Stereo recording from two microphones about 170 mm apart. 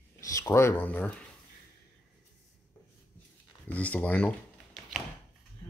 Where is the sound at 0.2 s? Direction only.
20° left (ahead or behind).